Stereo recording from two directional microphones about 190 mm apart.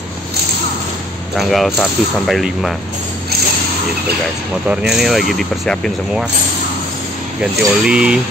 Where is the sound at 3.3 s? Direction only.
55° right (ahead or behind).